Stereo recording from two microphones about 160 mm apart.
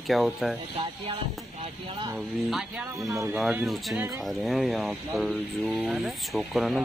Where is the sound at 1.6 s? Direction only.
35° right (ahead or behind).